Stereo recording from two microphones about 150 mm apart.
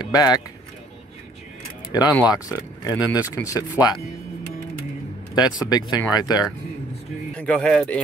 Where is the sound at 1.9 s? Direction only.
25° left (ahead or behind).